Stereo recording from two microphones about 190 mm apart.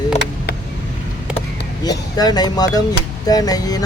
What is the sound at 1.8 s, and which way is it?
Speech, 20° left (ahead or behind).